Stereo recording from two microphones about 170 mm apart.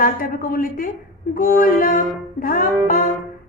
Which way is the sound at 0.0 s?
55° left (ahead or behind).